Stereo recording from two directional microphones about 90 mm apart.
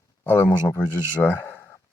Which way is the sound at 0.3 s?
20° left (ahead or behind).